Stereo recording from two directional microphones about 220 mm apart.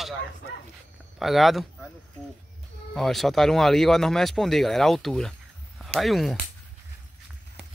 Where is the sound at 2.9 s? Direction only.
Centre (ahead or behind).